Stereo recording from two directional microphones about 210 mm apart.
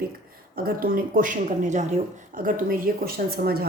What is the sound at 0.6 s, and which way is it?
Speech, 45° right (ahead or behind).